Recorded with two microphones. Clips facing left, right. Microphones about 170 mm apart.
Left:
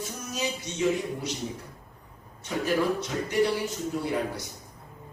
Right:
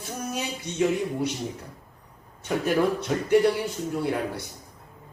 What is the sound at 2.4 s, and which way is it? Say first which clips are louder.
A man's voice: right 3 dB; 55° right (ahead or behind).